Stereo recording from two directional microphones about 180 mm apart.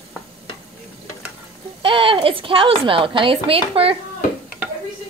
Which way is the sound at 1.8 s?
30° right (ahead or behind).